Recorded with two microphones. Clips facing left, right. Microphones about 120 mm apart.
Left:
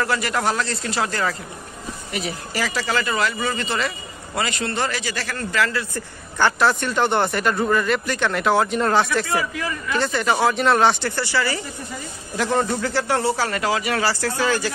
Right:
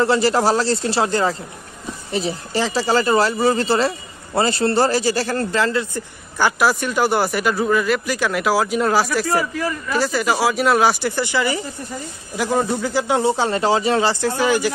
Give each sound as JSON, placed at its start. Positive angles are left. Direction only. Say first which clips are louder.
{"t": 0.0, "sound": "speech", "louder": "right 6 dB", "side_deg": -30}
{"t": 6.3, "sound": "speech", "louder": "right 1 dB", "side_deg": -10}
{"t": 9.6, "sound": "speech", "louder": "right 3 dB", "side_deg": -35}
{"t": 9.9, "sound": "speech", "louder": "right 1 dB", "side_deg": -5}